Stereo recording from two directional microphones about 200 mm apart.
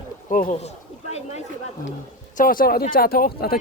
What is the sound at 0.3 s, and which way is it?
Speech, 40° left (ahead or behind).